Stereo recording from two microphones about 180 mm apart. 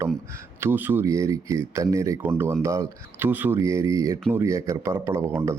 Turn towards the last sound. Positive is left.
turn(degrees=-15)  # may be behind; listen again after turning